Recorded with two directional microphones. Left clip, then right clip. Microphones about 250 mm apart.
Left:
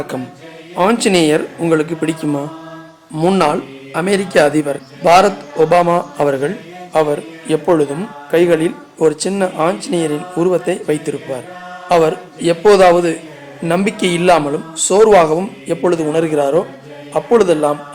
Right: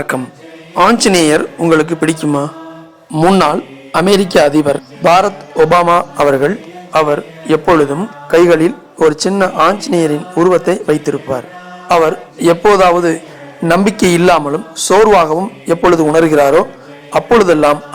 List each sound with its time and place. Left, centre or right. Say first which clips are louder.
0.1 s a man's voice: right 5 dB; right
0.8 s a man's voice: right 4 dB; centre